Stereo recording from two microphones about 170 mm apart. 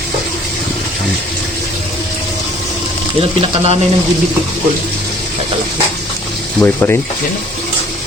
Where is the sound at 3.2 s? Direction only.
35° right (ahead or behind).